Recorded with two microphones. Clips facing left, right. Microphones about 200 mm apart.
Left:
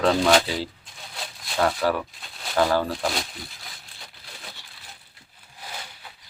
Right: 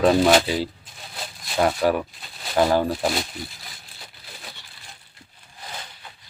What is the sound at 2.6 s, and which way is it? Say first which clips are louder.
Speech: right 2 dB; 20° right (ahead or behind).